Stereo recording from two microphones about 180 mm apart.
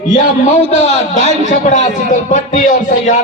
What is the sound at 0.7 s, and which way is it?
A man's voice, 40° left (ahead or behind).